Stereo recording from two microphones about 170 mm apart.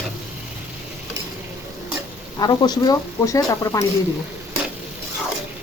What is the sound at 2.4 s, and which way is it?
Speech, 25° left (ahead or behind).